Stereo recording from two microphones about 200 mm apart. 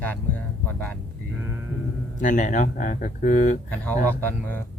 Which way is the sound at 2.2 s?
40° left (ahead or behind).